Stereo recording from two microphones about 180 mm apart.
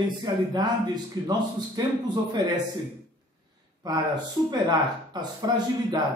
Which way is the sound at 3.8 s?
25° right (ahead or behind).